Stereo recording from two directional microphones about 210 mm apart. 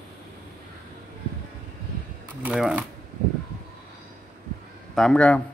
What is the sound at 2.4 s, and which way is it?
Speech, 5° right (ahead or behind).